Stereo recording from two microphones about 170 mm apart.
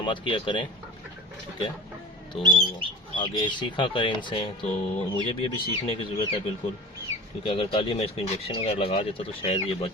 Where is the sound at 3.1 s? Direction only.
30° left (ahead or behind).